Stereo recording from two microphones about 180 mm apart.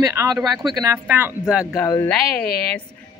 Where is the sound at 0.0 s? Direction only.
15° right (ahead or behind).